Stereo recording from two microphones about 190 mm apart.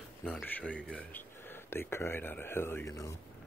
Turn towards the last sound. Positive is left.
turn(degrees=15)  # may be behind; listen again after turning